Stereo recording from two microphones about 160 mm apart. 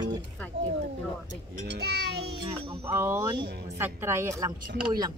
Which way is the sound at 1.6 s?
90° right.